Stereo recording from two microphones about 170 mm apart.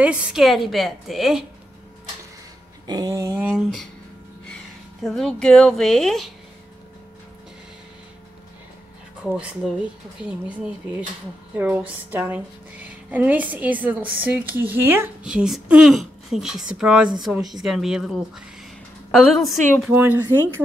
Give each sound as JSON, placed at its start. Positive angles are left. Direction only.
{"t": 0.0, "sound": "a woman's voice", "side_deg": -5}
{"t": 2.9, "sound": "a sound", "side_deg": -20}
{"t": 3.3, "sound": "a sound", "side_deg": -10}
{"t": 5.0, "sound": "a woman's voice", "side_deg": 0}
{"t": 9.2, "sound": "a woman's voice", "side_deg": -5}
{"t": 19.9, "sound": "a woman's voice", "side_deg": -10}